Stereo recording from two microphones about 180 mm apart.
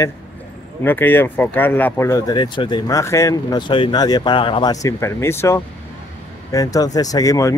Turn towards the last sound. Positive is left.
turn(degrees=20)  # may be behind; listen again after turning